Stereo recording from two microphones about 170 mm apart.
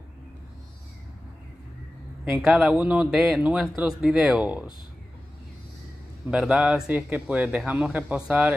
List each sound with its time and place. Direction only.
2.2 s speech: centre (ahead or behind)
6.3 s speech: 5° right (ahead or behind)